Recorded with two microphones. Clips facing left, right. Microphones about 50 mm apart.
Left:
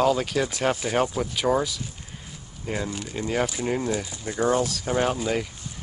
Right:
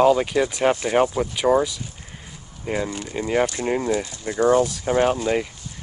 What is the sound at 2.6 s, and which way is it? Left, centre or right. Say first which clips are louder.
Speech: right 4 dB; centre.